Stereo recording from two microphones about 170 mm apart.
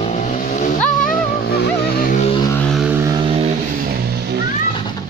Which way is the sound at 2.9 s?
20° right (ahead or behind).